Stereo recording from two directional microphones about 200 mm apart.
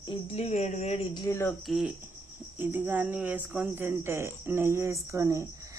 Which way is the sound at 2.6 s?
10° right (ahead or behind).